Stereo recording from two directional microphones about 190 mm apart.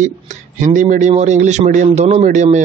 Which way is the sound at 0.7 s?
40° right (ahead or behind).